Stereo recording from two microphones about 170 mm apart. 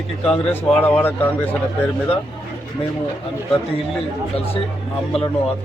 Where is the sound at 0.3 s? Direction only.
10° left (ahead or behind).